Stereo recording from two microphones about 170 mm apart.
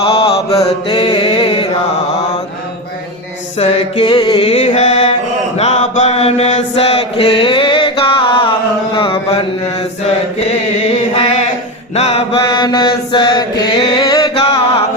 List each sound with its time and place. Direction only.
0.0 s mantra: 35° left (ahead or behind)
3.6 s mantra: 30° left (ahead or behind)
11.1 s a sound: 40° left (ahead or behind)
11.9 s mantra: 35° left (ahead or behind)
14.0 s music: 30° left (ahead or behind)